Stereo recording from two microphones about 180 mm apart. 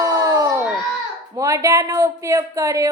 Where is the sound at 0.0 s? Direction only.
20° right (ahead or behind).